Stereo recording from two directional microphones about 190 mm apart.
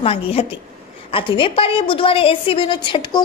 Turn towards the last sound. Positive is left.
turn(degrees=25)  # may be behind; listen again after turning